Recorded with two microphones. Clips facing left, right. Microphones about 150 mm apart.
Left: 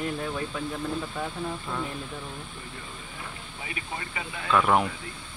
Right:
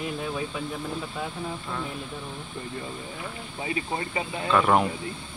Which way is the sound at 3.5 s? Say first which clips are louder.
Right 8 dB; 30° right (ahead or behind).